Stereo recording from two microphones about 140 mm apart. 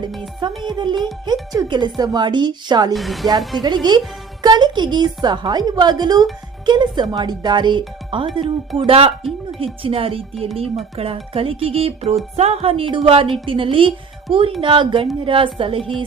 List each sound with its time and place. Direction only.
0.6 s speech: 35° right (ahead or behind)
2.9 s a woman's voice: centre (ahead or behind)
3.5 s speech: 30° right (ahead or behind)